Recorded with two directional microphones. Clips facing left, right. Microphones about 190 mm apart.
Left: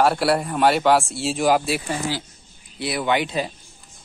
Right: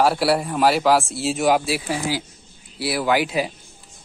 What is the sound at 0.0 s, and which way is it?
Speech, centre (ahead or behind).